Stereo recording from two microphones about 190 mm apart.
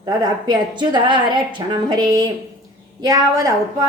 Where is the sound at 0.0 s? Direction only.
20° right (ahead or behind).